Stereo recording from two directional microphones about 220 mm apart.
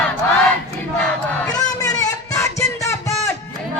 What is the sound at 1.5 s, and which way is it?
Music, 15° left (ahead or behind).